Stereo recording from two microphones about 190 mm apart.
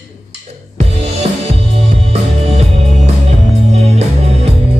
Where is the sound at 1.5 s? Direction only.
35° right (ahead or behind).